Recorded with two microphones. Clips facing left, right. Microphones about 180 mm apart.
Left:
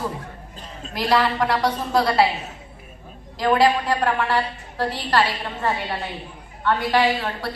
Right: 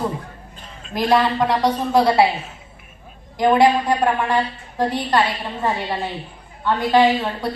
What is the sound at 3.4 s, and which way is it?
A woman's voice, 20° right (ahead or behind).